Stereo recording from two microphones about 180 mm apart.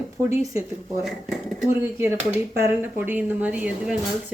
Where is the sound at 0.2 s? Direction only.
15° right (ahead or behind).